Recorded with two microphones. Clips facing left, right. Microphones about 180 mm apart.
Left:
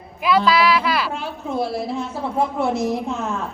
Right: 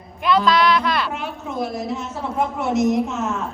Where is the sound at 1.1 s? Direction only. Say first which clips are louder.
Left 2 dB; 30° left (ahead or behind).